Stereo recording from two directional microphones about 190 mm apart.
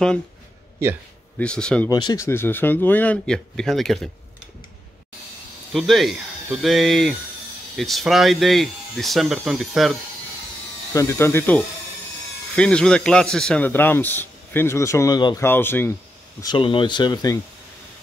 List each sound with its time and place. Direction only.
1.4 s speech: 5° left (ahead or behind)
1.9 s speech: 20° left (ahead or behind); by 4.1 s centre (ahead or behind)
5.7 s speech: centre (ahead or behind)
10.9 s speech: 15° left (ahead or behind)
16.3 s speech: 25° left (ahead or behind)